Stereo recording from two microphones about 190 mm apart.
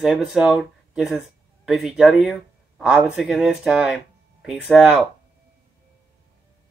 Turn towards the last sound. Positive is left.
turn(degrees=0)  # may be behind; listen again after turning